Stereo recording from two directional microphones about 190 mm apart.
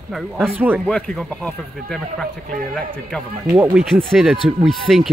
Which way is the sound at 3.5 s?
10° right (ahead or behind).